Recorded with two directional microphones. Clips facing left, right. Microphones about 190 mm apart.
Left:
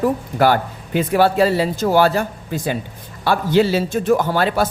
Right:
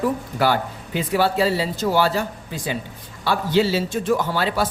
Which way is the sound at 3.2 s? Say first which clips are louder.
Left 3 dB; 55° left (ahead or behind).